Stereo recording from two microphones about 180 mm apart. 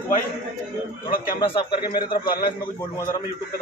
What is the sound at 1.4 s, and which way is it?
Speech, 30° left (ahead or behind).